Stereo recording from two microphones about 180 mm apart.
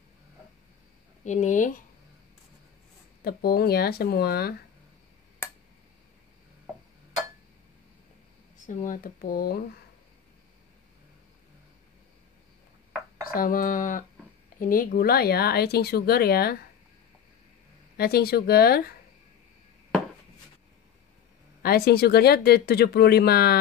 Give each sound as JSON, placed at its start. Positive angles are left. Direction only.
{"t": 1.2, "sound": "speech", "side_deg": 40}
{"t": 3.3, "sound": "speech", "side_deg": 60}
{"t": 8.6, "sound": "speech", "side_deg": 50}
{"t": 13.2, "sound": "speech", "side_deg": 55}
{"t": 17.9, "sound": "speech", "side_deg": 60}
{"t": 21.6, "sound": "speech", "side_deg": 60}